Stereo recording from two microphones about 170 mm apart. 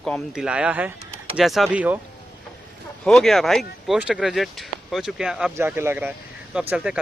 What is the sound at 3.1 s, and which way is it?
Speech, centre (ahead or behind).